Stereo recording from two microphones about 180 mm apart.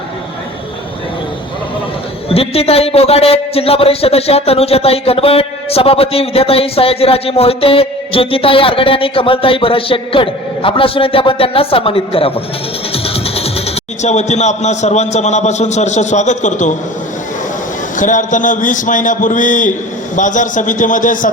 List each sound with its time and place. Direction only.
2.3 s a man's voice: 35° left (ahead or behind)
17.9 s a man's voice: 45° left (ahead or behind)